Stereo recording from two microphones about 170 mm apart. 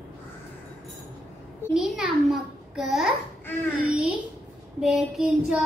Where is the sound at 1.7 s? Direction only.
Centre (ahead or behind).